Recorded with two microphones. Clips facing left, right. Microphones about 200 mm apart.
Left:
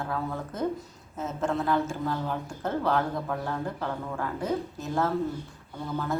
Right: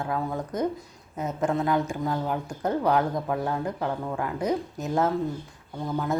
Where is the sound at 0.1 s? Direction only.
15° right (ahead or behind).